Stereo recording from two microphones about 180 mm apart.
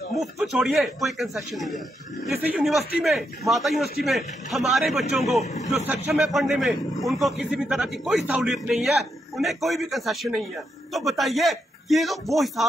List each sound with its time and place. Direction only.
0.2 s a man's voice: centre (ahead or behind)
5.4 s speech: 40° left (ahead or behind)
5.9 s a man's voice: centre (ahead or behind)